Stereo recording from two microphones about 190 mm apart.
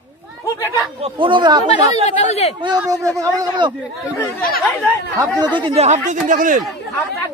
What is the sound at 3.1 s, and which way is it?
Speech, 25° right (ahead or behind).